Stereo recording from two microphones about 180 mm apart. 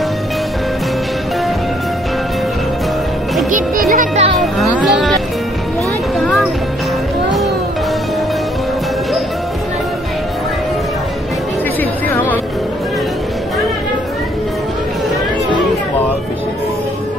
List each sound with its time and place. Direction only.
3.9 s music: 45° right (ahead or behind)
4.4 s a sound: centre (ahead or behind)
6.1 s music: centre (ahead or behind)